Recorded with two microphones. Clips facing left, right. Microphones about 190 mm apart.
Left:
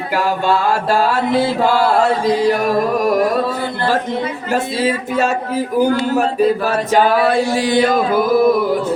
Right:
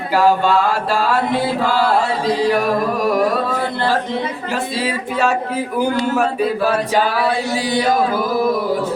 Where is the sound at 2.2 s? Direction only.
45° left (ahead or behind).